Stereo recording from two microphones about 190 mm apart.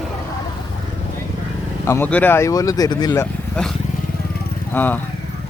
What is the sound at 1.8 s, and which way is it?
Speech, 10° left (ahead or behind).